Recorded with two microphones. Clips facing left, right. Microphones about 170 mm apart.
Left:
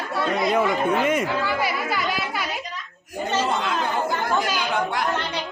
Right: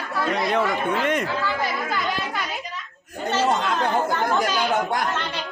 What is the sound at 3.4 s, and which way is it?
Chatter, 45° right (ahead or behind).